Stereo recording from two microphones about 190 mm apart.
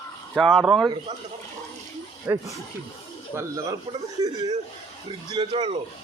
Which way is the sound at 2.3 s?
15° right (ahead or behind).